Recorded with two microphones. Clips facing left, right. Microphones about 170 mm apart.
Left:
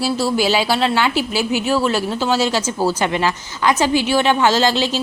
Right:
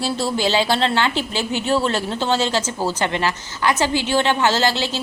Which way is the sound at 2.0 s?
25° right (ahead or behind).